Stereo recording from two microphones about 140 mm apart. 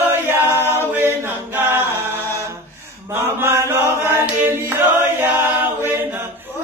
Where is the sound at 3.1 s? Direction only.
15° right (ahead or behind).